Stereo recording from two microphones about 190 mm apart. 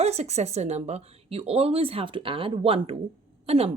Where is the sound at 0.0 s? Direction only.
35° right (ahead or behind).